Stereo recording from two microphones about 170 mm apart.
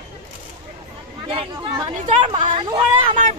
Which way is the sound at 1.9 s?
45° right (ahead or behind).